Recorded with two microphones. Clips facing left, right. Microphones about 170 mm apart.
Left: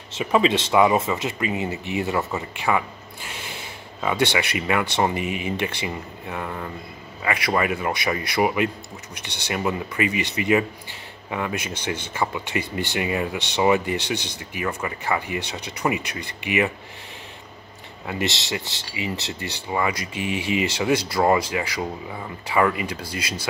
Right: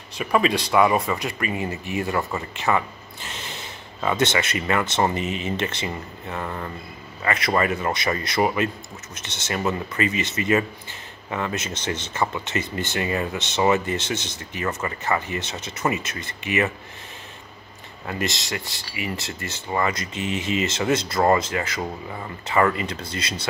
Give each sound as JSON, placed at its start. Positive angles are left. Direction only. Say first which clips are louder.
{"t": 0.2, "sound": "speech", "louder": "left 1 dB", "side_deg": 20}
{"t": 18.7, "sound": "speech", "louder": "left 1 dB", "side_deg": 20}